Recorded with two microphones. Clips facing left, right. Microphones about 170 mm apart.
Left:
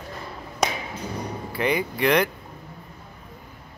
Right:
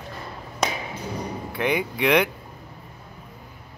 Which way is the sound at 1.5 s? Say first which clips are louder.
Even; centre (ahead or behind).